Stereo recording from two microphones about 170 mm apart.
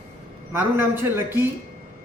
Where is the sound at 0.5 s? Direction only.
10° right (ahead or behind).